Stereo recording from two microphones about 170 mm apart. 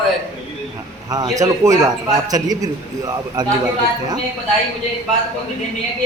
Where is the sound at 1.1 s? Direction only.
20° right (ahead or behind).